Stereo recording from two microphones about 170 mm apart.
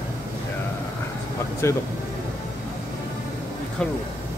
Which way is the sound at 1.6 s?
15° left (ahead or behind).